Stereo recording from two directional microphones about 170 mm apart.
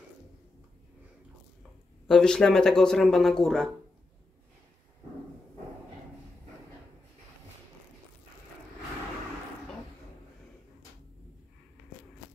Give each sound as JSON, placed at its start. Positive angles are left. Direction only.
{"t": 2.0, "sound": "speech", "side_deg": 5}